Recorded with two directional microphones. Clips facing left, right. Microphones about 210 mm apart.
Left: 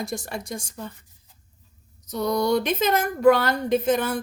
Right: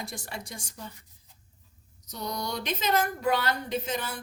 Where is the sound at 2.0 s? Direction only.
50° left (ahead or behind).